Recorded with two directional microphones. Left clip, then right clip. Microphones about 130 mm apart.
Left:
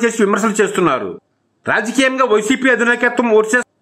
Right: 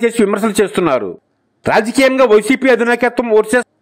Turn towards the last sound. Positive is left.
turn(degrees=-40)  # may be behind; listen again after turning